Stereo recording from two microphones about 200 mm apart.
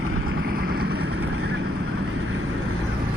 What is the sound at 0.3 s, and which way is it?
Vehicle, 50° right (ahead or behind).